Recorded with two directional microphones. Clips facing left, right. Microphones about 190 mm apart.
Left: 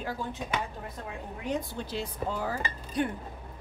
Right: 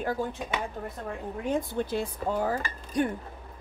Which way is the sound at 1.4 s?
50° right (ahead or behind).